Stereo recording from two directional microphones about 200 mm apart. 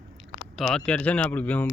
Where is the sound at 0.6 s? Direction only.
5° left (ahead or behind).